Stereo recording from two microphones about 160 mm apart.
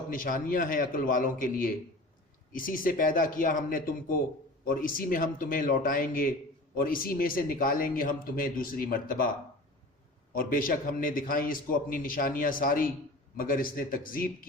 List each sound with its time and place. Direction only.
0.1 s speech: 60° left (ahead or behind)
10.3 s speech: 60° left (ahead or behind)